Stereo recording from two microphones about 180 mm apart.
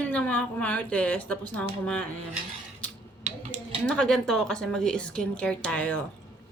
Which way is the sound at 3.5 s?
5° left (ahead or behind).